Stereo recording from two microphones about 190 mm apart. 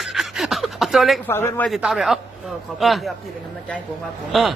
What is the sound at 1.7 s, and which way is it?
A man's voice, centre (ahead or behind).